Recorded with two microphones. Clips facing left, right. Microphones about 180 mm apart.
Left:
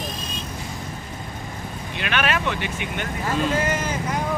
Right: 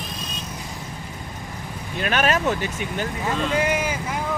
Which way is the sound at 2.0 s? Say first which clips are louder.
Right 3 dB; 40° right (ahead or behind).